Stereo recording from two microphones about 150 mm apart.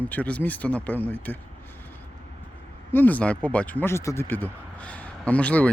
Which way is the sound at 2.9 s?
10° left (ahead or behind).